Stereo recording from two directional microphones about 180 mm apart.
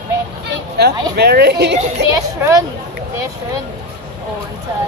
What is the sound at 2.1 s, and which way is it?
Speech, 15° right (ahead or behind).